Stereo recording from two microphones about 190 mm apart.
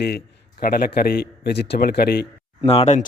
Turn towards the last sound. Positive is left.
turn(degrees=35)  # may be behind; listen again after turning